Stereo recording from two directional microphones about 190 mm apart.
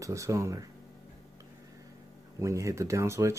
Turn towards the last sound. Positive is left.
turn(degrees=-15)  # may be behind; listen again after turning